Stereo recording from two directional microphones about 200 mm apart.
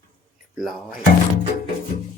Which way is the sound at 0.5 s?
Centre (ahead or behind).